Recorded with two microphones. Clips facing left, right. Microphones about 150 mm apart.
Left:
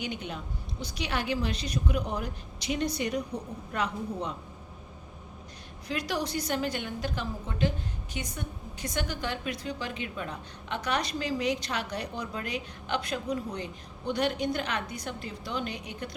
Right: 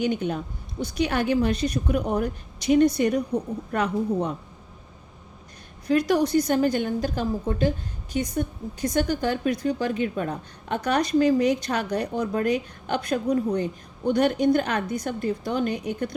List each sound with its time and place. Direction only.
0.0 s a woman's voice: 45° right (ahead or behind)
5.9 s a woman's voice: 45° right (ahead or behind)